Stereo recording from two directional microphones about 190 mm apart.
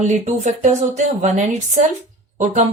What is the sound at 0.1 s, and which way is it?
A woman's voice, 40° right (ahead or behind).